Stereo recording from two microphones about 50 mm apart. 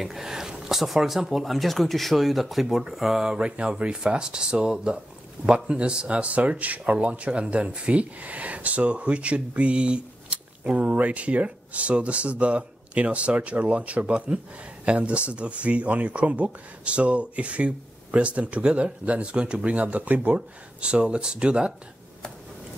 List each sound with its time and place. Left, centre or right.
0.0 s speech: centre